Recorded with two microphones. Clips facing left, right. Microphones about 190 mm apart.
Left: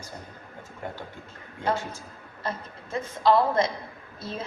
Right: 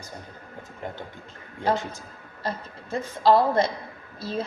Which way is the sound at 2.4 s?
35° right (ahead or behind).